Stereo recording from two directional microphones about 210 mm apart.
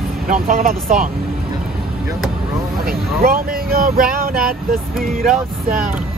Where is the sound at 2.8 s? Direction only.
45° right (ahead or behind).